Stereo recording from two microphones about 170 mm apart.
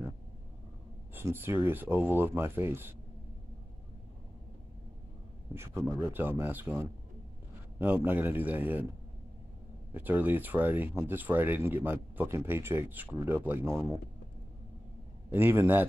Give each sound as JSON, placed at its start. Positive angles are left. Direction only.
{"t": 1.1, "sound": "speech", "side_deg": -15}
{"t": 5.5, "sound": "speech", "side_deg": -15}
{"t": 9.9, "sound": "speech", "side_deg": -10}
{"t": 15.3, "sound": "speech", "side_deg": -15}